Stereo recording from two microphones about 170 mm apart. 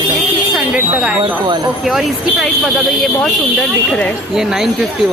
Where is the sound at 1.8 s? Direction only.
Centre (ahead or behind).